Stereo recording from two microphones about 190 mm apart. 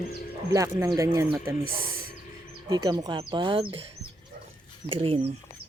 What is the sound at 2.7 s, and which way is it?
Speech, 20° right (ahead or behind).